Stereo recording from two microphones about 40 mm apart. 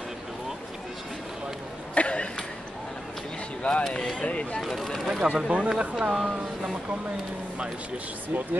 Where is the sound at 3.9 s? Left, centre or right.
Centre.